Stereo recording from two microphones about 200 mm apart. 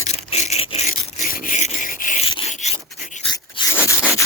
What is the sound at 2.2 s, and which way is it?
Rub, 30° left (ahead or behind).